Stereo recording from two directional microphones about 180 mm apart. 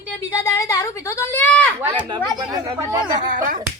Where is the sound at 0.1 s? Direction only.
15° left (ahead or behind).